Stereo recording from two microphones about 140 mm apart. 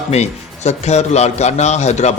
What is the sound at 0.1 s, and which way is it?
A man's voice, 50° left (ahead or behind).